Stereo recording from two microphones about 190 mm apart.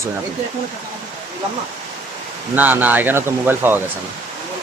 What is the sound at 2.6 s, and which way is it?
Speech, 10° right (ahead or behind).